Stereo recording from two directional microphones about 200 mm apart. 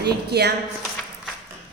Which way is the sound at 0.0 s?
55° right (ahead or behind).